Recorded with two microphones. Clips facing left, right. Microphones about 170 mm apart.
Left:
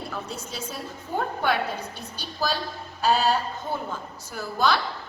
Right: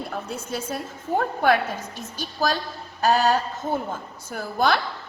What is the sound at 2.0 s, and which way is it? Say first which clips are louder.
A woman's voice: right 3 dB; 45° right (ahead or behind).